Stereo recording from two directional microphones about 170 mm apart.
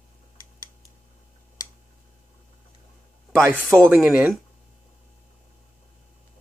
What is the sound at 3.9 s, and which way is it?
Speech, 10° right (ahead or behind).